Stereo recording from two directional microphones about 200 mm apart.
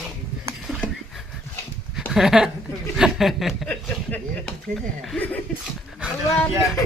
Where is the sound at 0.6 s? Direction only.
Centre (ahead or behind).